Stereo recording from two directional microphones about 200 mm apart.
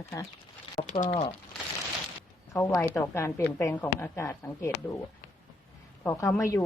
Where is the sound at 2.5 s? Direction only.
15° left (ahead or behind).